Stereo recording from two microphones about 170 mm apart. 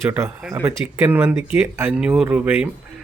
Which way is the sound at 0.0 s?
15° right (ahead or behind).